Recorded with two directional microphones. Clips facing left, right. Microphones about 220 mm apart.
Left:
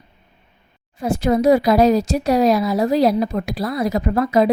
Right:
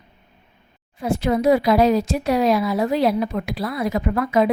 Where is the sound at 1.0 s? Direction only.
45° left (ahead or behind).